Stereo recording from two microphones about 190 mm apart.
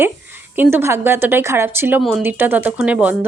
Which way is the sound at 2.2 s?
10° right (ahead or behind).